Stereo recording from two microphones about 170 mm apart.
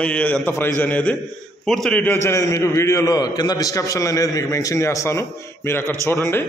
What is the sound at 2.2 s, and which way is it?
A man's voice, 15° left (ahead or behind).